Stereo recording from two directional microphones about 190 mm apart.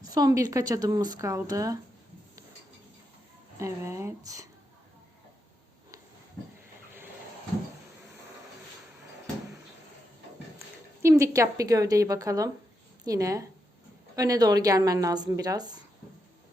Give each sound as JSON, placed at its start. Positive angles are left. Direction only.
{"t": 0.0, "sound": "speech", "side_deg": -20}
{"t": 3.6, "sound": "a woman's voice", "side_deg": -15}
{"t": 11.0, "sound": "a woman's voice", "side_deg": -15}